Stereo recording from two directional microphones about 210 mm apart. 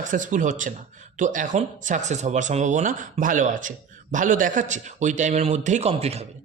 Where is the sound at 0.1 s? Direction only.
35° right (ahead or behind).